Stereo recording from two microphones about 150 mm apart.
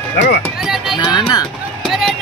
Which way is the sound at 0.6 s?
5° right (ahead or behind).